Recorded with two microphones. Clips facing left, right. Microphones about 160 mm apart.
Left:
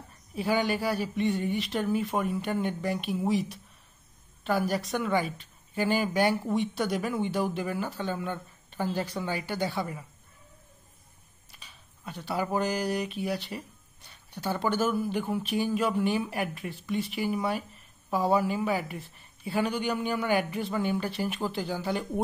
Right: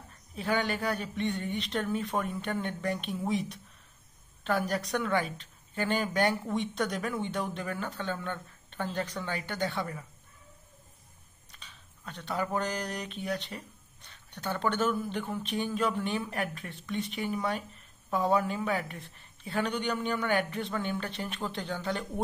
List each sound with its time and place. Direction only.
0.4 s speech: 5° left (ahead or behind)
11.5 s speech: 10° left (ahead or behind)